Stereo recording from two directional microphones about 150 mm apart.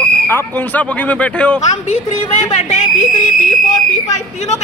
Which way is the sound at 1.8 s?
55° left (ahead or behind).